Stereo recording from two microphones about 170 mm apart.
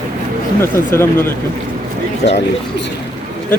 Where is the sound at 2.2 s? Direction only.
75° left (ahead or behind).